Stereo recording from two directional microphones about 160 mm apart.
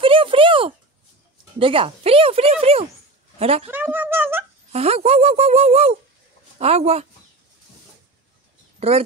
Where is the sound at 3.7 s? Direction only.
10° right (ahead or behind).